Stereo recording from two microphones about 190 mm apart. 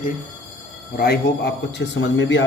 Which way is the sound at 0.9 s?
55° left (ahead or behind).